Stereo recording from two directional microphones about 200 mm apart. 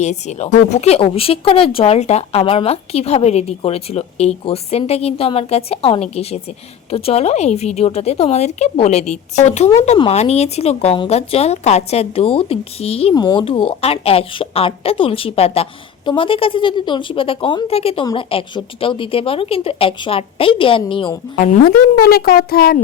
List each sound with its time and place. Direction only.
0.0 s a woman's voice: 35° left (ahead or behind)
21.4 s a woman's voice: 45° left (ahead or behind)